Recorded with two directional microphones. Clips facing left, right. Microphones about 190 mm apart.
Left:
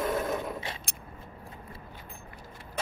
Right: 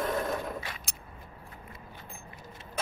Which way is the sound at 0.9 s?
55° left (ahead or behind).